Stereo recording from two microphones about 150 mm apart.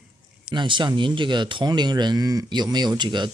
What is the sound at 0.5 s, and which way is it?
Speech, 30° right (ahead or behind).